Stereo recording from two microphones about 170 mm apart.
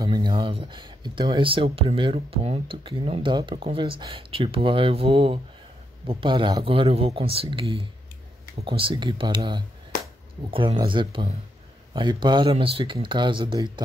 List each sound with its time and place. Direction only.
0.0 s speech: 25° right (ahead or behind)